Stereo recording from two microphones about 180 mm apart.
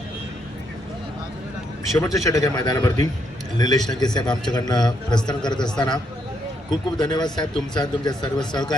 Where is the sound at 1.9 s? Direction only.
15° left (ahead or behind).